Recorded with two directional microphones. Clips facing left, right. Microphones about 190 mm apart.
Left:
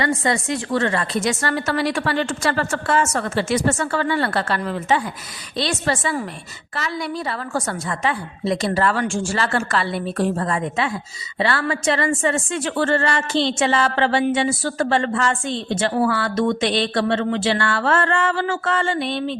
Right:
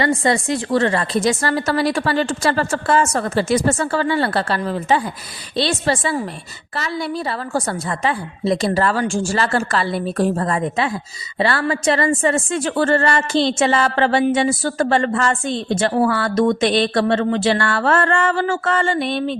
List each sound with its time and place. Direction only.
0.0 s a woman's voice: 30° right (ahead or behind); by 19.4 s 50° right (ahead or behind)